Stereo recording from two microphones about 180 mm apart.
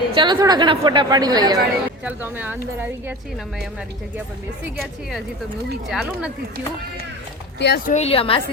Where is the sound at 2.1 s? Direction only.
10° right (ahead or behind).